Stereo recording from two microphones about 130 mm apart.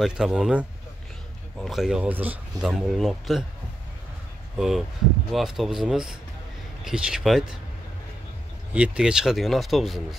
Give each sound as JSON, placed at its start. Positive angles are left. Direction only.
{"t": 0.0, "sound": "speech", "side_deg": -5}
{"t": 4.6, "sound": "speech", "side_deg": -5}
{"t": 8.7, "sound": "speech", "side_deg": -10}